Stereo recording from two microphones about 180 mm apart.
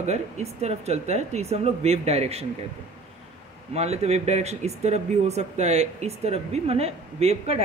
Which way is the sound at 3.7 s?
35° right (ahead or behind).